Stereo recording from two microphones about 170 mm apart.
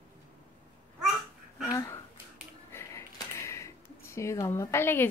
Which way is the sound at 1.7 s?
20° left (ahead or behind).